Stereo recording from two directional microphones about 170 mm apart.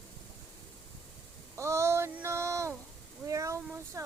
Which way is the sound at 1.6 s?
15° right (ahead or behind).